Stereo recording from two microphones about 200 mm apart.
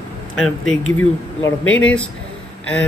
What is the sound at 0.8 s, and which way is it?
Speech, 90° left.